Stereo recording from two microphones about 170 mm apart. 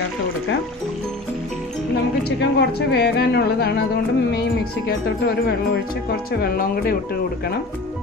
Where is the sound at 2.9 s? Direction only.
70° left (ahead or behind).